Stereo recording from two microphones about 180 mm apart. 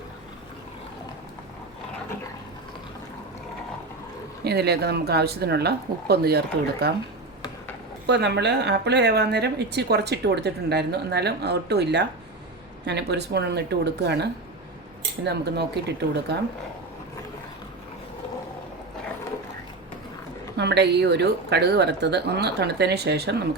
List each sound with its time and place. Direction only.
4.4 s speech: 65° right (ahead or behind)
8.0 s a woman's voice: 70° right (ahead or behind)
20.6 s a woman's voice: 70° right (ahead or behind)